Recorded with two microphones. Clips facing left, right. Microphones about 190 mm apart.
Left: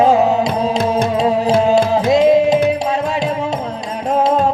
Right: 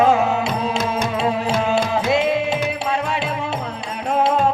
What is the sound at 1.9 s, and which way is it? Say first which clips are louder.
Music: left 7 dB; 40° left (ahead or behind).